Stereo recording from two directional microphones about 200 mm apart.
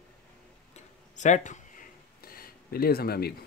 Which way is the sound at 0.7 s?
35° left (ahead or behind).